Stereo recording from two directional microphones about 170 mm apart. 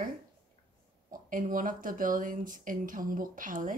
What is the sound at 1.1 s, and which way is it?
A woman's voice, 50° right (ahead or behind).